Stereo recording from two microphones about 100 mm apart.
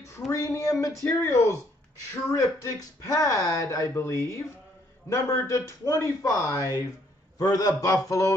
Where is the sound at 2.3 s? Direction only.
35° left (ahead or behind).